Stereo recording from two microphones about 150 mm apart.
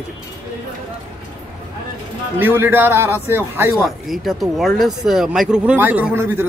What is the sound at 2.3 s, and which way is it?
A man's voice, 15° right (ahead or behind).